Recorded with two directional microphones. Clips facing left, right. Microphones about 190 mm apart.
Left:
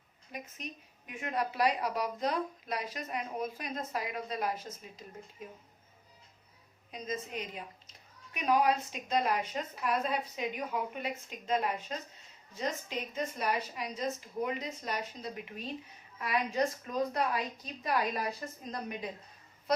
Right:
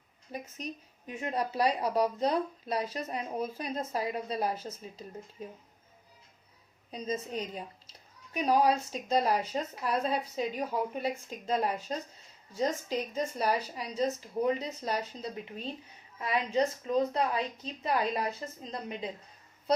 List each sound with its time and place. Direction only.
0.3 s a woman's voice: 35° right (ahead or behind)
6.9 s a woman's voice: 35° right (ahead or behind)